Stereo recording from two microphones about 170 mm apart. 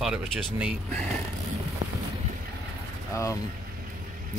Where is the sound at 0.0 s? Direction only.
5° right (ahead or behind).